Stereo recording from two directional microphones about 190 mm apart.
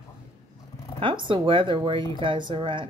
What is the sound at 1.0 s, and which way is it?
Speech, 25° right (ahead or behind).